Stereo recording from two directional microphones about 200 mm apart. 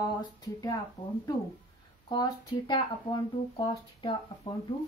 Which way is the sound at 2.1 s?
20° left (ahead or behind).